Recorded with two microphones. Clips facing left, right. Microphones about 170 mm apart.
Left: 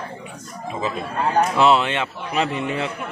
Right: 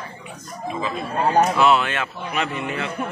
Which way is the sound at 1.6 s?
25° left (ahead or behind).